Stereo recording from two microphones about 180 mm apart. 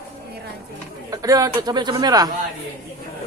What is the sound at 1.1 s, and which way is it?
Speech, 20° right (ahead or behind).